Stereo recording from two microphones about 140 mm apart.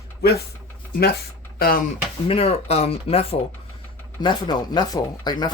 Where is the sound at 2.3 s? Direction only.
45° left (ahead or behind).